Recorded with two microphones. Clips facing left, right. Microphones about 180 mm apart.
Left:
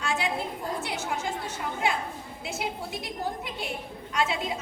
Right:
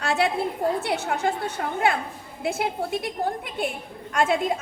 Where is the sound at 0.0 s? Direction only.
65° right (ahead or behind).